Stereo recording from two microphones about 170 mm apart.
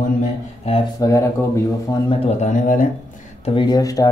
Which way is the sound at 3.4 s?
30° left (ahead or behind).